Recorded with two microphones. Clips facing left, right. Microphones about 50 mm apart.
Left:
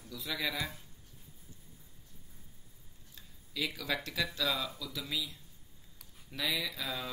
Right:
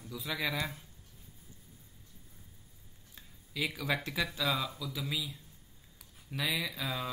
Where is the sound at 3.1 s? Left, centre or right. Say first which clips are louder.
Right 1 dB; centre.